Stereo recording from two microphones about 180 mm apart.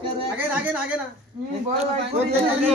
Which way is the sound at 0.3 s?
10° right (ahead or behind).